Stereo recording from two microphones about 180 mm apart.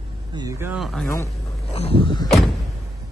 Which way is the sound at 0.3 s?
20° right (ahead or behind).